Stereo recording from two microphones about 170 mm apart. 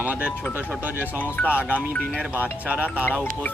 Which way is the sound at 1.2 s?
10° left (ahead or behind).